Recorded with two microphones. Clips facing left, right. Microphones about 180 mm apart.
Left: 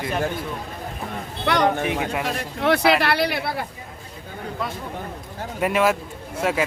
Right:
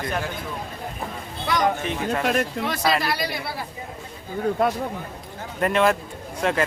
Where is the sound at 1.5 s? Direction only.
70° left (ahead or behind).